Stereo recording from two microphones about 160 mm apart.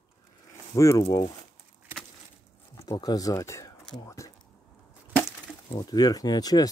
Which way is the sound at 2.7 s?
25° left (ahead or behind).